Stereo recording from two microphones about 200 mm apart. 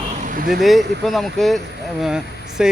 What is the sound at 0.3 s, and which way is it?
Speech, 45° right (ahead or behind).